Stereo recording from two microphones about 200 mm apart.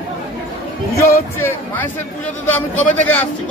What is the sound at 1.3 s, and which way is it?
A man's voice, 10° left (ahead or behind).